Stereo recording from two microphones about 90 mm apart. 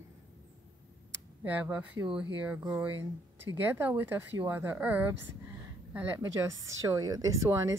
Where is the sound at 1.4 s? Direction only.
15° right (ahead or behind).